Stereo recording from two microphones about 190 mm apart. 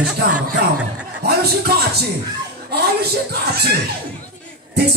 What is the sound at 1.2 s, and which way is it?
Speech, 55° right (ahead or behind).